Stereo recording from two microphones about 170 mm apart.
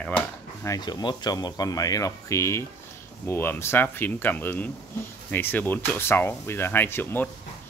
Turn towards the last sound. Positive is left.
turn(degrees=10)  # may be behind; listen again after turning